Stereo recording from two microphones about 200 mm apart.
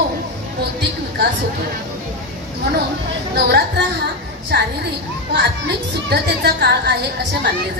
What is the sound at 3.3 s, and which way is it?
Speech, 55° right (ahead or behind).